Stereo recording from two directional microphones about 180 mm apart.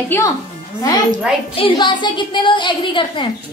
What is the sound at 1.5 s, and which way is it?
A woman's voice, 30° left (ahead or behind).